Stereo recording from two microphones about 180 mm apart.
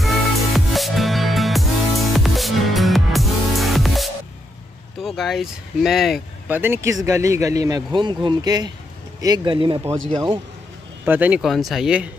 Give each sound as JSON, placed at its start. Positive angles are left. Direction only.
{"t": 0.0, "sound": "music", "side_deg": 0}
{"t": 5.0, "sound": "speech", "side_deg": 0}
{"t": 6.6, "sound": "speech", "side_deg": -15}
{"t": 11.1, "sound": "speech", "side_deg": -10}